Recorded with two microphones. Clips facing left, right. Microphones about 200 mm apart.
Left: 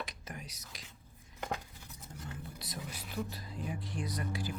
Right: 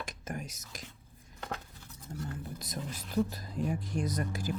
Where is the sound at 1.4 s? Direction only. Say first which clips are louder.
Left 1 dB; 15° left (ahead or behind).